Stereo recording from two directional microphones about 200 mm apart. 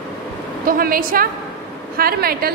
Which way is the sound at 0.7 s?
45° right (ahead or behind).